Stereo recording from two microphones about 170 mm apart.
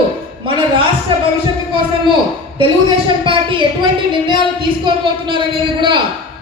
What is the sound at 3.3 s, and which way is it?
Speech, 30° right (ahead or behind).